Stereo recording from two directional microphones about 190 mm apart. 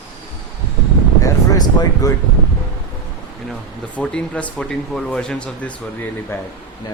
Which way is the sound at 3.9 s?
5° left (ahead or behind).